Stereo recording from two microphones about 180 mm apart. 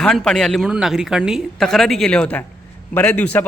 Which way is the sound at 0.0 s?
5° left (ahead or behind).